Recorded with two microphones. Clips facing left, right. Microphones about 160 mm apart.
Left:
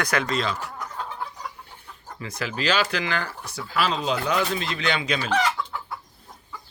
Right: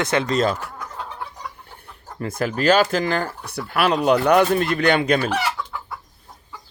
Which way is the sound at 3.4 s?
60° right (ahead or behind).